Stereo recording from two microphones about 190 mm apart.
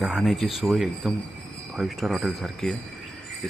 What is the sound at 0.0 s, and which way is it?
Speech, centre (ahead or behind).